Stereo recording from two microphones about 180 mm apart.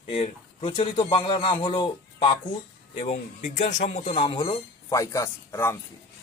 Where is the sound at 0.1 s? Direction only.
30° left (ahead or behind).